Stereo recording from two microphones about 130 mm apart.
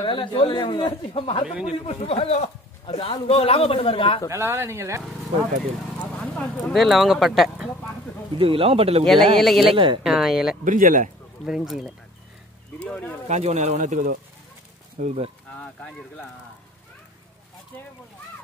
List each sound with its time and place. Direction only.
0.0 s a man's voice: 40° left (ahead or behind)
4.3 s speech: 20° right (ahead or behind)
6.2 s speech: 10° left (ahead or behind)
8.4 s speech: 45° right (ahead or behind)
9.0 s speech: centre (ahead or behind)
10.6 s speech: 85° right
11.4 s speech: centre (ahead or behind)
12.7 s speech: 10° left (ahead or behind)
13.3 s speech: 55° right (ahead or behind); by 14.1 s 80° right
15.0 s speech: 65° right (ahead or behind)
15.6 s speech: 10° left (ahead or behind)